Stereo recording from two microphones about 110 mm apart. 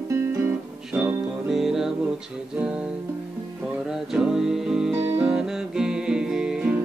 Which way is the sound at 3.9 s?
5° right (ahead or behind).